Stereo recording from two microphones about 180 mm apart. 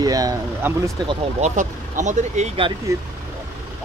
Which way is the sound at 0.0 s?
20° right (ahead or behind).